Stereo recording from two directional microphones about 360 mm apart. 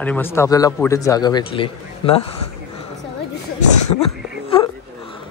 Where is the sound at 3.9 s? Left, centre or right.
Centre.